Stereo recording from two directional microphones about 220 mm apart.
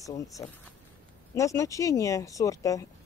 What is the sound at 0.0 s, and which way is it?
Speech, 15° left (ahead or behind).